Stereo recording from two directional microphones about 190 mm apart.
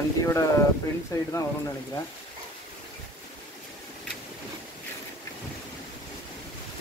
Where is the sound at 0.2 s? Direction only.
15° left (ahead or behind).